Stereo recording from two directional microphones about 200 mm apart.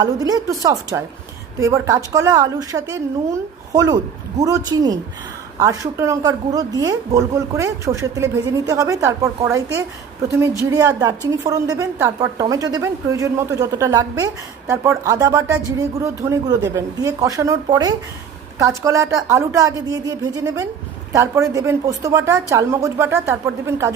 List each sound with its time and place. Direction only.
0.0 s speech: 20° right (ahead or behind)